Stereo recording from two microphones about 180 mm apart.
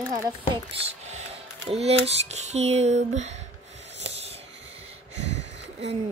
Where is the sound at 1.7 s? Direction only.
35° right (ahead or behind).